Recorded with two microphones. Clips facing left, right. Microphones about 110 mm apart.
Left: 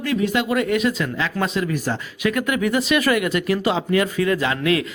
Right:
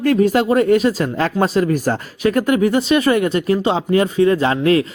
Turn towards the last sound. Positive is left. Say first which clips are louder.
# right 6 dB
turn(degrees=-35)  # may be behind; listen again after turning